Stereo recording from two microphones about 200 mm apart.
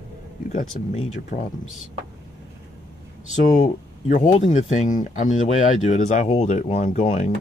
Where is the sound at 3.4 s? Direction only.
40° left (ahead or behind).